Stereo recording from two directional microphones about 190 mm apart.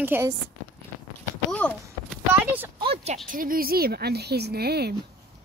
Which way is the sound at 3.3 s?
45° right (ahead or behind).